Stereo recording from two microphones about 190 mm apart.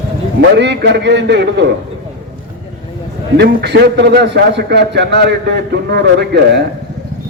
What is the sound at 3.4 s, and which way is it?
A man's voice, 60° right (ahead or behind).